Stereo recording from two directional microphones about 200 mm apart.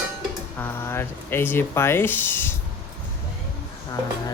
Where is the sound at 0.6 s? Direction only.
10° left (ahead or behind).